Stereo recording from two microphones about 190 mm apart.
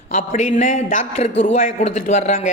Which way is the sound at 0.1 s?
40° left (ahead or behind).